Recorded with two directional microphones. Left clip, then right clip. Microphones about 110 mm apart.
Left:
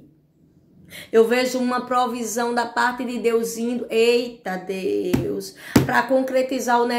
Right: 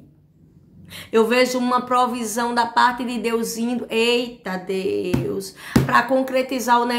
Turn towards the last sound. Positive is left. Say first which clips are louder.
# right 1 dB
turn(degrees=-30)  # may be behind; listen again after turning